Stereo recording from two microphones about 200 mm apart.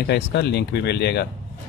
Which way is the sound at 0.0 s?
55° left (ahead or behind).